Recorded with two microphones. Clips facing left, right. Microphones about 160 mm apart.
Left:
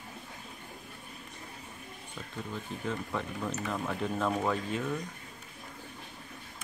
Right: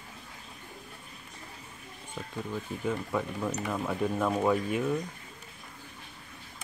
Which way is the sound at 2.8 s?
10° right (ahead or behind).